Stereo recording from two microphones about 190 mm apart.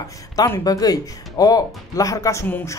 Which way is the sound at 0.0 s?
15° left (ahead or behind).